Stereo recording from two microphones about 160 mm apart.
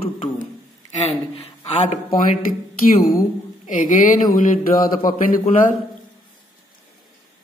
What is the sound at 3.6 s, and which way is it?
Speech, 50° left (ahead or behind).